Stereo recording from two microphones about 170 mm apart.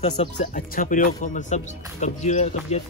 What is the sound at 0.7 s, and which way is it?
Speech, 55° left (ahead or behind).